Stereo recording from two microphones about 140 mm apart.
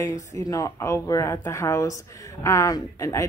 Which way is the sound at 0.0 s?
25° left (ahead or behind).